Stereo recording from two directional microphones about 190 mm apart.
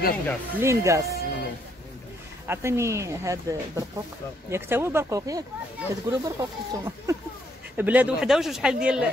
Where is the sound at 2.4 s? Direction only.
15° right (ahead or behind).